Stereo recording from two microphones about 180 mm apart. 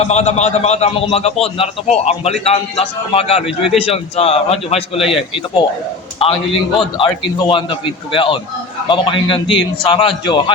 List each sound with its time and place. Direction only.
0.0 s a man's voice: 40° left (ahead or behind)